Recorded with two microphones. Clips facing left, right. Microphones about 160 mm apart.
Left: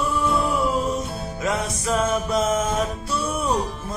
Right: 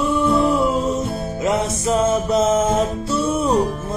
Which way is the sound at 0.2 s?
Centre (ahead or behind).